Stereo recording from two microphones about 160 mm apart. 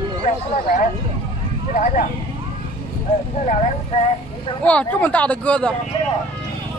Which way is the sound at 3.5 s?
40° left (ahead or behind).